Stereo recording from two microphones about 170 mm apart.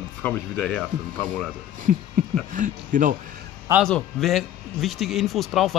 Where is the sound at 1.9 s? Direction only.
55° right (ahead or behind).